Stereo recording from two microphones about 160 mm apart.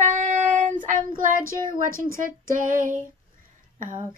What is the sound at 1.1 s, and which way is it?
Speech, 60° right (ahead or behind).